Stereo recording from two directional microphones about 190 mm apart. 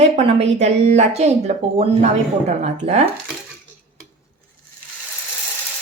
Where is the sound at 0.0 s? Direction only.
35° right (ahead or behind).